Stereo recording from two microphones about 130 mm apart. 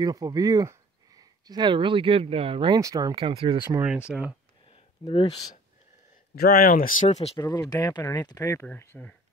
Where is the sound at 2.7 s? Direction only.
30° right (ahead or behind).